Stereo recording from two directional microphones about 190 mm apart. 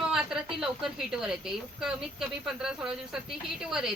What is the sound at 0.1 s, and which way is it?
A woman's voice, 5° right (ahead or behind).